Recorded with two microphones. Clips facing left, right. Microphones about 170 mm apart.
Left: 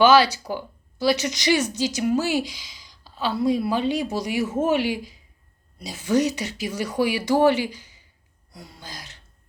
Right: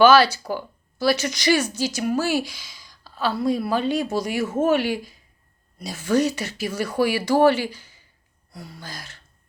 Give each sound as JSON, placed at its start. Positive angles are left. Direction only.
{"t": 0.0, "sound": "a woman's voice", "side_deg": 15}